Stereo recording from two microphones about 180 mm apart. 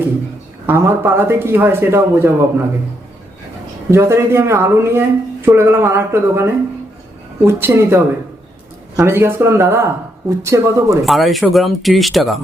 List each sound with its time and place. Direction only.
0.7 s speech: 10° right (ahead or behind)
3.9 s speech: 15° right (ahead or behind)
11.0 s speech: centre (ahead or behind)